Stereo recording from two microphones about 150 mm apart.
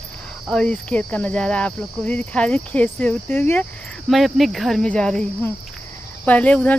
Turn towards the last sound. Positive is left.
turn(degrees=10)  # may be behind; listen again after turning